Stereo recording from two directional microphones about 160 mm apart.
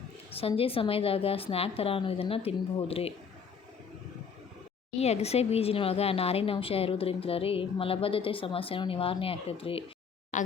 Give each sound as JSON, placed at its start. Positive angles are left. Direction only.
{"t": 0.3, "sound": "speech", "side_deg": 35}
{"t": 4.9, "sound": "speech", "side_deg": 40}
{"t": 10.3, "sound": "speech", "side_deg": 50}